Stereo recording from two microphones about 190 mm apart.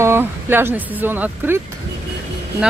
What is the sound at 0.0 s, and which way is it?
Speech, 10° right (ahead or behind).